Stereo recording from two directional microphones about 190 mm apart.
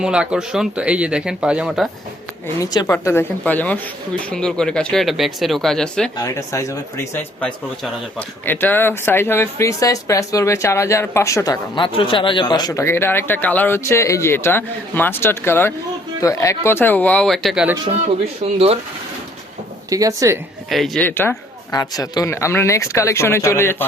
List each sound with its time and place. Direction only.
0.0 s speech: 5° right (ahead or behind)
2.6 s speech: 20° left (ahead or behind); by 6.1 s 5° left (ahead or behind)
6.1 s speech: 15° left (ahead or behind); by 17.7 s 5° right (ahead or behind)
18.4 s speech: 30° right (ahead or behind)
19.9 s speech: 20° right (ahead or behind)
20.7 s speech: centre (ahead or behind)